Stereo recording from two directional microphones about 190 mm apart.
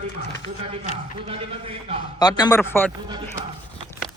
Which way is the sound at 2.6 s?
10° left (ahead or behind).